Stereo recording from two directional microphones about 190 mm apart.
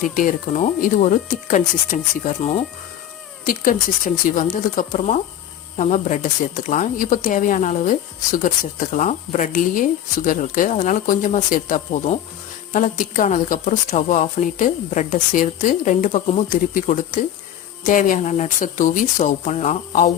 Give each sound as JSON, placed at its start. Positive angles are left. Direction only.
{"t": 0.0, "sound": "speech", "side_deg": 45}